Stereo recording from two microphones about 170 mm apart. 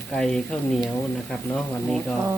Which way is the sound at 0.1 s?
5° left (ahead or behind).